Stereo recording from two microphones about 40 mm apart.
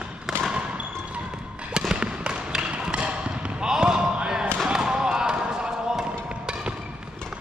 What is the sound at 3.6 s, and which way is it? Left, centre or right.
Basketball bounce, centre.